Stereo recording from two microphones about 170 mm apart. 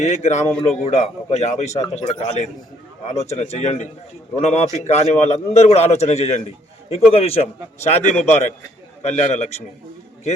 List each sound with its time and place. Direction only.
0.0 s a man's voice: 40° left (ahead or behind)